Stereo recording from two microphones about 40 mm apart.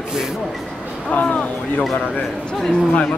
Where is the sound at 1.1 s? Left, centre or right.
Left.